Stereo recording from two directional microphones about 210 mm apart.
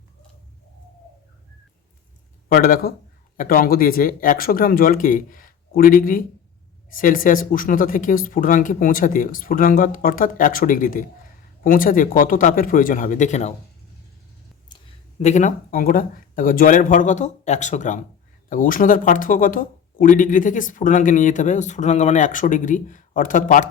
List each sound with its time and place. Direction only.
2.5 s speech: 45° left (ahead or behind)
14.7 s a sound: 20° left (ahead or behind)
15.2 s speech: 35° left (ahead or behind)